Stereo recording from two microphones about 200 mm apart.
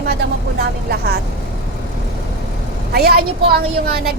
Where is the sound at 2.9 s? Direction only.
50° right (ahead or behind).